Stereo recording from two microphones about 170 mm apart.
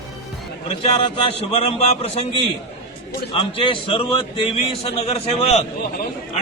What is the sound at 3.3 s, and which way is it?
A man's voice, 30° left (ahead or behind).